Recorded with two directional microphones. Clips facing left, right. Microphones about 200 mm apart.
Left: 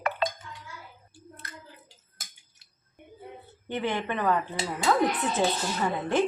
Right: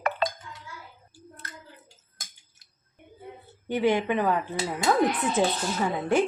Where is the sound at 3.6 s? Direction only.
10° right (ahead or behind).